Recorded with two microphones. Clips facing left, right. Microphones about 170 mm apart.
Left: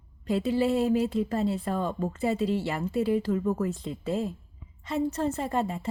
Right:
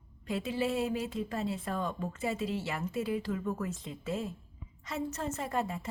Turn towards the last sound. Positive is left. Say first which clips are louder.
# left 5 dB
turn(degrees=30)  # may be behind; listen again after turning